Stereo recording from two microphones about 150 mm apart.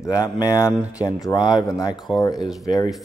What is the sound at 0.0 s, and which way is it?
Speech, 20° left (ahead or behind).